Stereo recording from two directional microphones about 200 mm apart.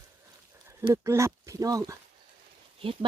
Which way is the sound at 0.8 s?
15° right (ahead or behind).